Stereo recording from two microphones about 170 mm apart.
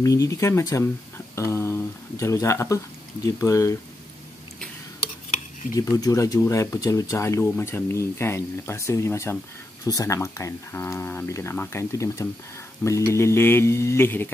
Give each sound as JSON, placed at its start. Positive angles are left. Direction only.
{"t": 0.0, "sound": "speech", "side_deg": 20}
{"t": 5.8, "sound": "speech", "side_deg": 20}